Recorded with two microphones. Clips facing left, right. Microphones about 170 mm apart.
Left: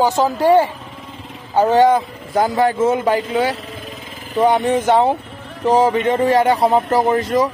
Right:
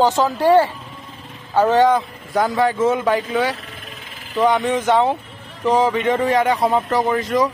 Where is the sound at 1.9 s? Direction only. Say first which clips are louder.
Left 2 dB; 30° left (ahead or behind).